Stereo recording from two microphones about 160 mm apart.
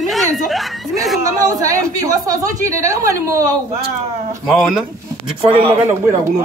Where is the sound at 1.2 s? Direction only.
20° right (ahead or behind).